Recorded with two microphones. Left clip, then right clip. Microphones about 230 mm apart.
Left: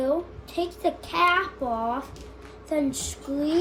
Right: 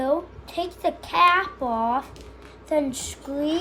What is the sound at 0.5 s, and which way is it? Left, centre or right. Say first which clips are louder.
Speech: right 1 dB; right.